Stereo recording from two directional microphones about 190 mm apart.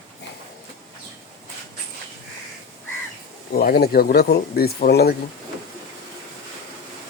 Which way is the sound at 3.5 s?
50° left (ahead or behind).